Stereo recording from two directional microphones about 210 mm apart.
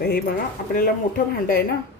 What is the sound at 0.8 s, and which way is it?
Speech, 45° left (ahead or behind).